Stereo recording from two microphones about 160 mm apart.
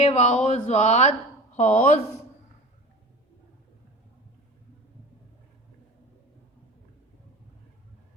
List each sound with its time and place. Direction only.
0.0 s speech: 40° left (ahead or behind)